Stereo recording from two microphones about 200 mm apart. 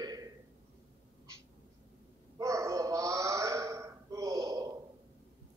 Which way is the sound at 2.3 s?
15° right (ahead or behind).